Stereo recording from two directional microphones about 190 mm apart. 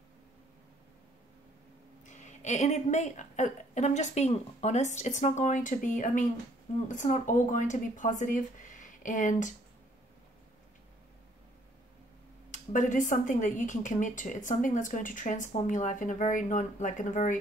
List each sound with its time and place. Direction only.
2.0 s a woman's voice: 40° left (ahead or behind)
12.4 s speech: 40° left (ahead or behind)